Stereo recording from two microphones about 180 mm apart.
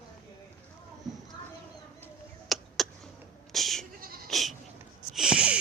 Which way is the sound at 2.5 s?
Centre (ahead or behind).